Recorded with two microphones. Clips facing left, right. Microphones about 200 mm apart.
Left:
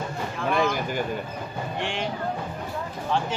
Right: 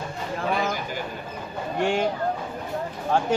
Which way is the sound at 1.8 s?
45° right (ahead or behind).